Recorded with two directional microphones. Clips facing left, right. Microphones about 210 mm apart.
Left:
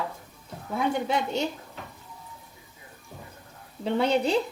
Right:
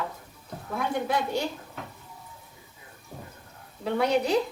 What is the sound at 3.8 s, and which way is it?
Speech, 30° left (ahead or behind).